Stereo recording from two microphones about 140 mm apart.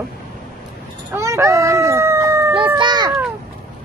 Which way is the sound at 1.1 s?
20° right (ahead or behind).